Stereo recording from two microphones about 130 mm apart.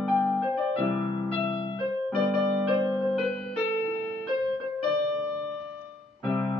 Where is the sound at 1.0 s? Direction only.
35° left (ahead or behind).